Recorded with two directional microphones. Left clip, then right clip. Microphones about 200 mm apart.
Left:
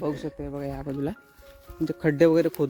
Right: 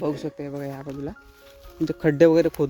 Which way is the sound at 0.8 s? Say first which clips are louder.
Left 2 dB; 40° left (ahead or behind).